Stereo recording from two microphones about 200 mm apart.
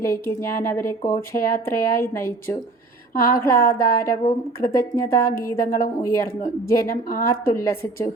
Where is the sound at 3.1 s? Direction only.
45° left (ahead or behind).